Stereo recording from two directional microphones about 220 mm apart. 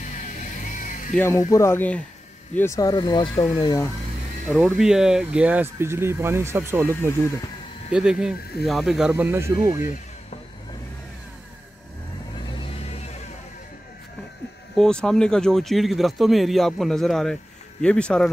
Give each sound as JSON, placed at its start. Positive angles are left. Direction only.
{"t": 0.0, "sound": "vehicle", "side_deg": 35}
{"t": 1.1, "sound": "speech", "side_deg": 10}
{"t": 4.5, "sound": "speech", "side_deg": -5}
{"t": 7.9, "sound": "speech", "side_deg": -5}
{"t": 12.5, "sound": "vehicle", "side_deg": 25}
{"t": 14.8, "sound": "speech", "side_deg": 5}